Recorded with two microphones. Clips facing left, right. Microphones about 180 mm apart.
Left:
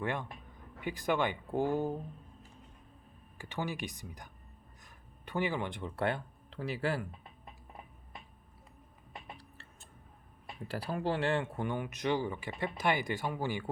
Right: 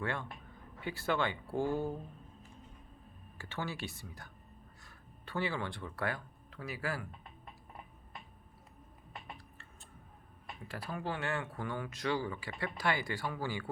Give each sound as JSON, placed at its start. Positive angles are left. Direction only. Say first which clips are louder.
{"t": 0.0, "sound": "speech", "louder": "left 2 dB", "side_deg": 15}
{"t": 3.3, "sound": "speech", "louder": "left 3 dB", "side_deg": 15}
{"t": 10.7, "sound": "speech", "louder": "left 6 dB", "side_deg": 35}